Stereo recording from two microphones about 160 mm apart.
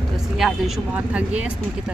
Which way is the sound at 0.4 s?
5° right (ahead or behind).